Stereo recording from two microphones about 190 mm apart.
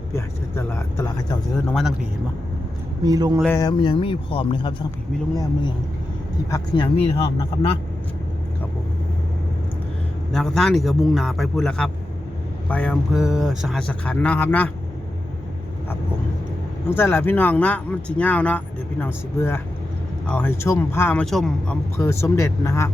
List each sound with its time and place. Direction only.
0.1 s speech: 15° left (ahead or behind)
3.0 s speech: 20° right (ahead or behind)
3.4 s speech: 15° left (ahead or behind)
6.5 s speech: 25° left (ahead or behind)
10.3 s speech: centre (ahead or behind)
16.9 s speech: 10° left (ahead or behind)
21.9 s speech: 15° left (ahead or behind)